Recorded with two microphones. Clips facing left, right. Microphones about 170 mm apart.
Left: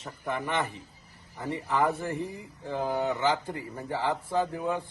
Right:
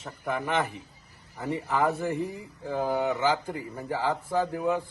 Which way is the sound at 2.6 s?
15° right (ahead or behind).